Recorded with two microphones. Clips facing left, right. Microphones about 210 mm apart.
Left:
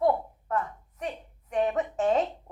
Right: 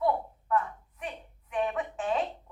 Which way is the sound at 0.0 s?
45° left (ahead or behind).